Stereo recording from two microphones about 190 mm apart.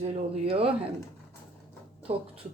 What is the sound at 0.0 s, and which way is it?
Speech, 30° right (ahead or behind).